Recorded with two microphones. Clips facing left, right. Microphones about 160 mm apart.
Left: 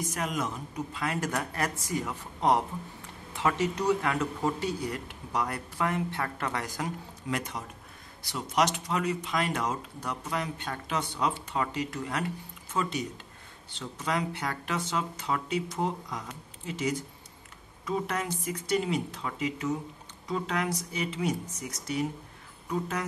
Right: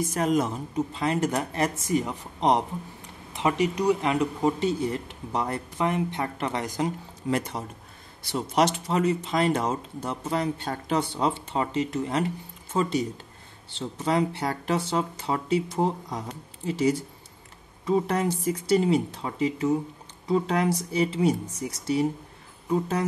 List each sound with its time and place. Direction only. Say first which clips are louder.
0.0 s speech: right 8 dB; 30° right (ahead or behind)